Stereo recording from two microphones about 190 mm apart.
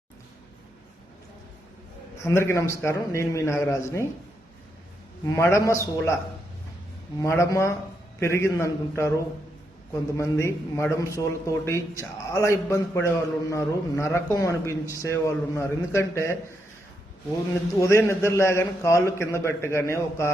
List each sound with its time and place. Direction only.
2.2 s speech: 15° left (ahead or behind)
5.2 s speech: 15° left (ahead or behind)
7.2 s speech: 15° left (ahead or behind)
10.2 s speech: 15° left (ahead or behind)
17.7 s speech: 15° left (ahead or behind)